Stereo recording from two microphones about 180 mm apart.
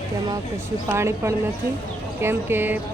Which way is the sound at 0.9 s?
15° right (ahead or behind).